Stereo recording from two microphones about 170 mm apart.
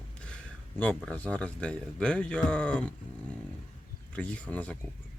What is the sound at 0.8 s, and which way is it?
Speech, 10° left (ahead or behind).